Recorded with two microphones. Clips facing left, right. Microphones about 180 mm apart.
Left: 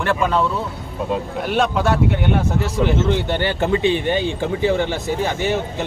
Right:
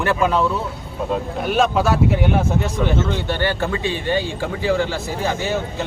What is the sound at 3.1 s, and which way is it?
Speech, 20° left (ahead or behind).